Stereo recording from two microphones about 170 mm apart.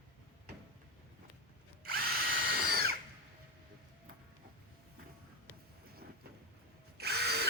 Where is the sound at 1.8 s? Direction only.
60° right (ahead or behind).